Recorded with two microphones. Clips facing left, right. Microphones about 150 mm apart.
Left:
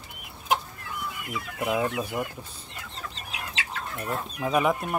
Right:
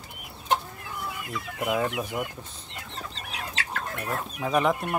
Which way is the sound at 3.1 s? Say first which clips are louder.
Right 1 dB; 40° right (ahead or behind).